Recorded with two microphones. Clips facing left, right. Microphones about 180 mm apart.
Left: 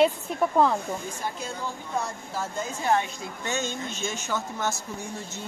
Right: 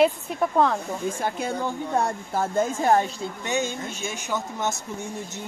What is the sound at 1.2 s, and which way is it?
Speech, 60° right (ahead or behind).